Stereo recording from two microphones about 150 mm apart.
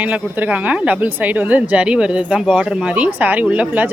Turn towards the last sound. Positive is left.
turn(degrees=-10)  # may be behind; listen again after turning